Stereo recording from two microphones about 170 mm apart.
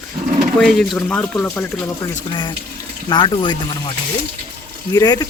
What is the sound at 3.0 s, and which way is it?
Speech, 25° left (ahead or behind).